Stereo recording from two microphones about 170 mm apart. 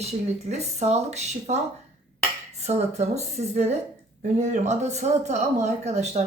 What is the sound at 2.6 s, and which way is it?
Speech, 40° right (ahead or behind).